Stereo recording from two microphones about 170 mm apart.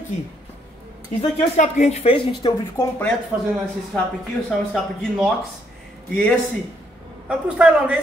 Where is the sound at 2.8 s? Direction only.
10° left (ahead or behind).